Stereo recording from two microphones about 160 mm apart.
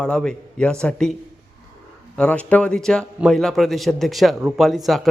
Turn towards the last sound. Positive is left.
turn(degrees=0)  # may be behind; listen again after turning